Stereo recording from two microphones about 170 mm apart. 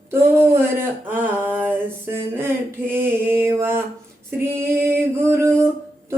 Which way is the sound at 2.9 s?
15° right (ahead or behind).